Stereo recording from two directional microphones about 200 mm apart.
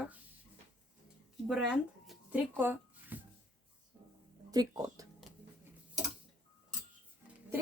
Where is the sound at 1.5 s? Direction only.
5° right (ahead or behind).